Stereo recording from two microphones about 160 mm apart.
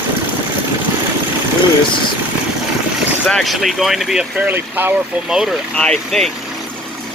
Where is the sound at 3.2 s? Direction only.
Centre (ahead or behind).